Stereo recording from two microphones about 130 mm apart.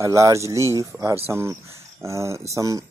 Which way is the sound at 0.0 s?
25° right (ahead or behind).